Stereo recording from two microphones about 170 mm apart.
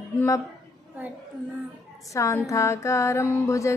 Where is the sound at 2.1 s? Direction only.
20° left (ahead or behind).